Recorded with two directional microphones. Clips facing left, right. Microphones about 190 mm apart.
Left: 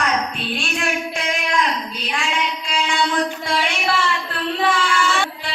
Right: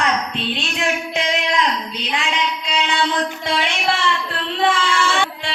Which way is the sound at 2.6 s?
20° right (ahead or behind).